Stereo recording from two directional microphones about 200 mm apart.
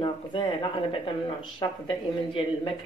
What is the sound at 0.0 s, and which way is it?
A woman's voice, 25° left (ahead or behind).